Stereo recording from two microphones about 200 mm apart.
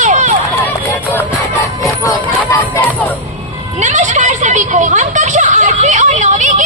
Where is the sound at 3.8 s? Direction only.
40° right (ahead or behind).